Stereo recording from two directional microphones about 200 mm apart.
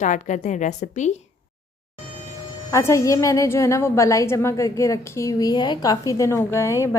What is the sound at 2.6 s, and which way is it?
A woman's voice, 15° left (ahead or behind).